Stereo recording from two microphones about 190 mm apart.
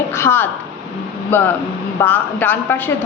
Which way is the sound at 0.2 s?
10° left (ahead or behind).